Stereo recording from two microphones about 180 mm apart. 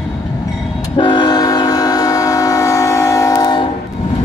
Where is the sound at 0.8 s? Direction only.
25° left (ahead or behind).